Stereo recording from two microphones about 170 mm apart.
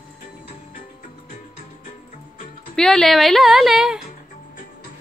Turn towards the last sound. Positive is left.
turn(degrees=0)  # may be behind; listen again after turning